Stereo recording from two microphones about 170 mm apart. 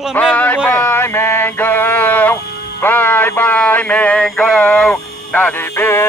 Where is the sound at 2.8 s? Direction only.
10° left (ahead or behind).